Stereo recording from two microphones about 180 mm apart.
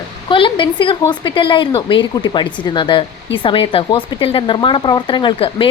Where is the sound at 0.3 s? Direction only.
30° left (ahead or behind).